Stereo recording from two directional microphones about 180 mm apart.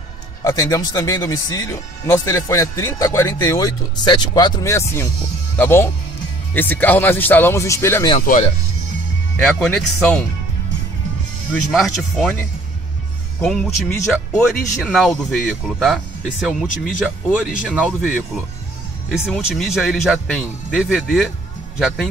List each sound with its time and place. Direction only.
0.4 s speech: 20° left (ahead or behind)
9.4 s speech: 5° left (ahead or behind)
11.7 s speech: centre (ahead or behind)
13.5 s speech: 5° left (ahead or behind)